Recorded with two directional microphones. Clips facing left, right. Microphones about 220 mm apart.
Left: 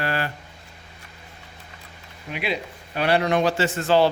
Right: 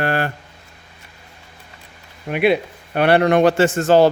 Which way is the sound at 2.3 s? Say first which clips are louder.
Right 11 dB; 55° right (ahead or behind).